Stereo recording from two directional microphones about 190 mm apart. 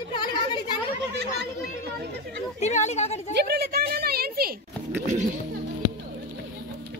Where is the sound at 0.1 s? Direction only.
25° left (ahead or behind).